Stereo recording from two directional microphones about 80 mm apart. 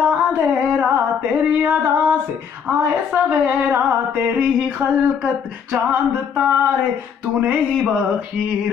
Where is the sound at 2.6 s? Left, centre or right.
Right.